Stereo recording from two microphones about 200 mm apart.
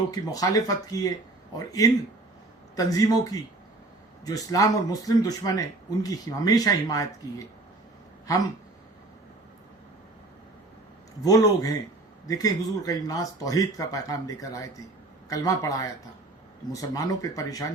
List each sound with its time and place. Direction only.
0.1 s speech: 20° left (ahead or behind)
11.2 s speech: 15° left (ahead or behind)